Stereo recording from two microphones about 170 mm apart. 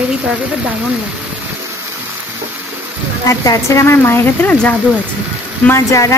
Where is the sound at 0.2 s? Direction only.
5° right (ahead or behind).